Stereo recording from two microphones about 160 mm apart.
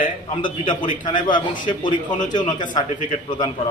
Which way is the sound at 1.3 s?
55° left (ahead or behind).